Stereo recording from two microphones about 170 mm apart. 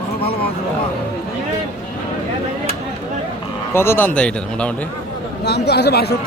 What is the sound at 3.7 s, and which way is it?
Speech, 15° left (ahead or behind).